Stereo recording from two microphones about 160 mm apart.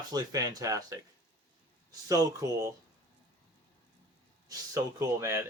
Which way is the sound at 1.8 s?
20° right (ahead or behind).